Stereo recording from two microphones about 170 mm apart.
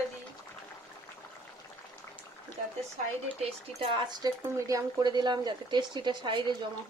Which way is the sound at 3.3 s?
30° right (ahead or behind).